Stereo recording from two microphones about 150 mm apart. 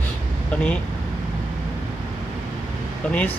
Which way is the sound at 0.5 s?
5° left (ahead or behind).